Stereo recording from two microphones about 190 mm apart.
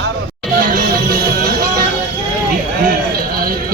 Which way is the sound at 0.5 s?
45° right (ahead or behind).